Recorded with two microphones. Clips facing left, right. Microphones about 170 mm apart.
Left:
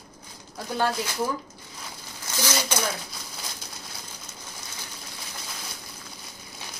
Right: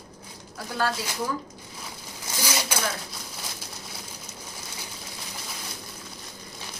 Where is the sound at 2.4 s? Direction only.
10° right (ahead or behind).